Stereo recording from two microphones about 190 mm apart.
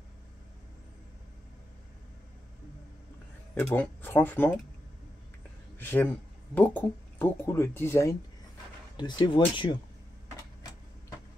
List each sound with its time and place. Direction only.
3.5 s speech: 10° left (ahead or behind)
5.8 s speech: 10° left (ahead or behind)